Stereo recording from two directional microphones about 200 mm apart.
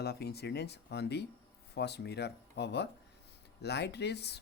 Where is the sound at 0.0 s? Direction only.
55° left (ahead or behind).